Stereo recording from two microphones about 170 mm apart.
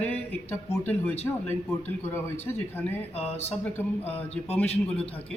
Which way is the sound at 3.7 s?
10° left (ahead or behind).